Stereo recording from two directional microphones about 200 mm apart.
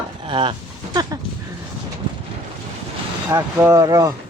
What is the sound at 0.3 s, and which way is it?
Speech, 25° right (ahead or behind).